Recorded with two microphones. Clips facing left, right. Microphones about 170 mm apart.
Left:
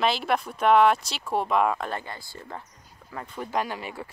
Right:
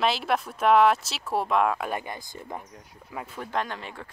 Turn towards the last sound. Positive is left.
turn(degrees=10)  # may be behind; listen again after turning